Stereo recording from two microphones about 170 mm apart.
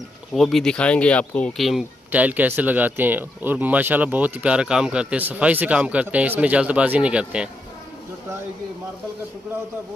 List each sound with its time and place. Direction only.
0.3 s speech: centre (ahead or behind)